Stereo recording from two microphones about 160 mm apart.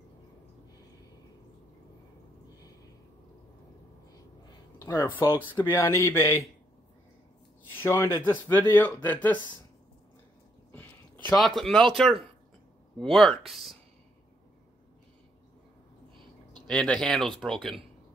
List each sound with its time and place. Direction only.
4.7 s speech: 15° left (ahead or behind)
5.2 s speech: 30° left (ahead or behind)
5.7 s speech: 15° left (ahead or behind)
7.7 s speech: 15° left (ahead or behind)
11.3 s speech: centre (ahead or behind)
16.6 s speech: 5° left (ahead or behind)